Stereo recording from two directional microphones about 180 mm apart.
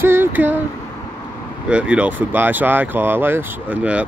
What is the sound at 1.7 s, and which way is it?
Speech, 5° right (ahead or behind).